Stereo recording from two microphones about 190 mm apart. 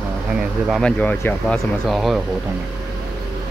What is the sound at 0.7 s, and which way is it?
Speech, 5° left (ahead or behind).